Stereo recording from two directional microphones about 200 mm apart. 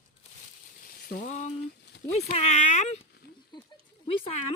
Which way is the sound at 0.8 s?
50° left (ahead or behind).